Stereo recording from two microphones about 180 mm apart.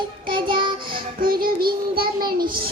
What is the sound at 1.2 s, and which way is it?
Child singing, 55° right (ahead or behind).